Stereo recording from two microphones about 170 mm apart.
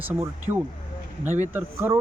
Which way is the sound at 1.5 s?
10° right (ahead or behind).